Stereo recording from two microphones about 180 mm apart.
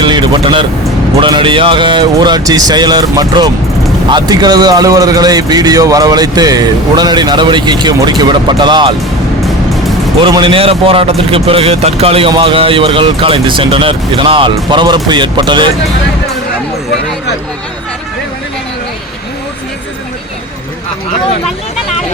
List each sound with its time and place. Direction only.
0.0 s vehicle: 25° right (ahead or behind)
1.2 s a man's voice: 25° right (ahead or behind)
10.2 s a man's voice: 30° right (ahead or behind)